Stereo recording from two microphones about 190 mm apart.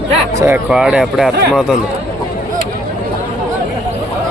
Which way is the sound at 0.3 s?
10° right (ahead or behind).